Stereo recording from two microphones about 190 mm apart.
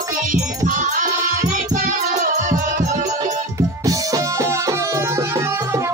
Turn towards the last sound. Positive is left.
turn(degrees=-15)  # may be behind; listen again after turning